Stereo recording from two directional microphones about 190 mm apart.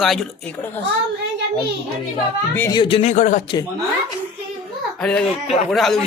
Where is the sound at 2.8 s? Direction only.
30° left (ahead or behind).